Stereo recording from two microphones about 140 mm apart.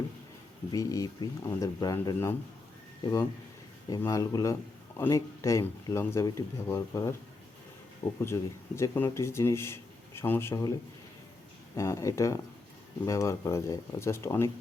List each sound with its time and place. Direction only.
0.7 s speech: 25° left (ahead or behind)
11.8 s speech: 20° left (ahead or behind)